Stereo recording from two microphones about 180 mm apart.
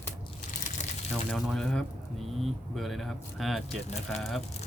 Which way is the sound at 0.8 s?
40° left (ahead or behind).